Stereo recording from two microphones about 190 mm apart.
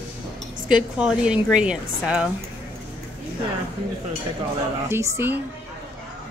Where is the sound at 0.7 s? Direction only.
5° right (ahead or behind).